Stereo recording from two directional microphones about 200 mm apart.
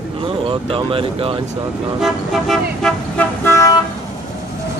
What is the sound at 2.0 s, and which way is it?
Toot, centre (ahead or behind).